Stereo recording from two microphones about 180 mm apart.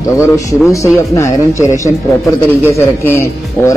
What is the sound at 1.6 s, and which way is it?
A man's voice, 20° left (ahead or behind).